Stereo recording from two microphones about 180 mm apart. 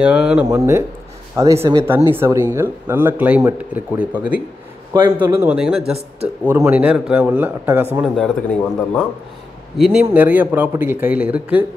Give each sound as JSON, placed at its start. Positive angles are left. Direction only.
{"t": 0.0, "sound": "a man's voice", "side_deg": -5}
{"t": 0.5, "sound": "a man's voice", "side_deg": -15}
{"t": 8.2, "sound": "a man's voice", "side_deg": 5}